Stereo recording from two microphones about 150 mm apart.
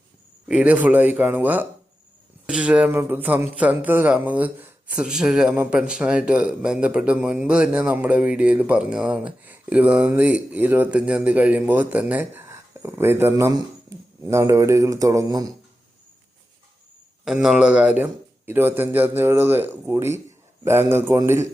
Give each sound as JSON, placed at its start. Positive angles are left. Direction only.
{"t": 0.4, "sound": "speech", "side_deg": -5}
{"t": 17.2, "sound": "speech", "side_deg": -5}